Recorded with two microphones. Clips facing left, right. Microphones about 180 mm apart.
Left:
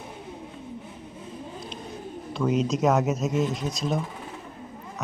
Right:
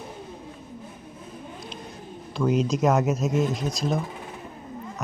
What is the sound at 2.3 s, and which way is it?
Speech, centre (ahead or behind).